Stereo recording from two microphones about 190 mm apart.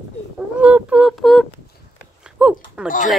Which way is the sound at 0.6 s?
5° right (ahead or behind).